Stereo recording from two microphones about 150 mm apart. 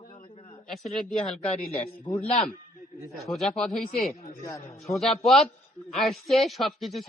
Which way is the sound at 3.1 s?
Centre (ahead or behind).